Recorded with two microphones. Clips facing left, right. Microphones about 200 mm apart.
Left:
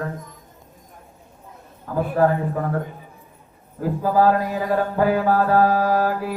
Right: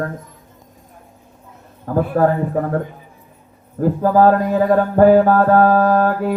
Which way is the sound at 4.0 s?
55° right (ahead or behind).